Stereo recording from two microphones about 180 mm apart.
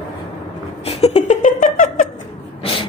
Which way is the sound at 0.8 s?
40° left (ahead or behind).